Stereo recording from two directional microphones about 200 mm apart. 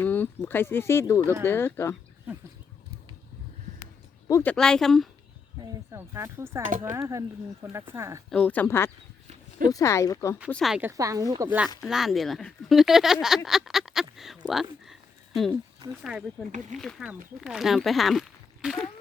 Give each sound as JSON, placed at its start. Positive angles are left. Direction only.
{"t": 0.0, "sound": "speech", "side_deg": 10}
{"t": 4.3, "sound": "speech", "side_deg": 15}
{"t": 4.5, "sound": "speech", "side_deg": 5}
{"t": 5.6, "sound": "speech", "side_deg": -15}
{"t": 6.7, "sound": "speech", "side_deg": -40}
{"t": 7.1, "sound": "speech", "side_deg": -15}
{"t": 8.3, "sound": "speech", "side_deg": 5}
{"t": 10.5, "sound": "speech", "side_deg": 0}
{"t": 11.8, "sound": "speech", "side_deg": 0}
{"t": 13.2, "sound": "a sound", "side_deg": 0}
{"t": 14.4, "sound": "speech", "side_deg": 0}
{"t": 16.1, "sound": "speech", "side_deg": -5}